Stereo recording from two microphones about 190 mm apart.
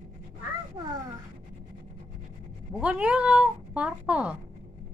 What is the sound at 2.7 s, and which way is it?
Cat, 5° right (ahead or behind).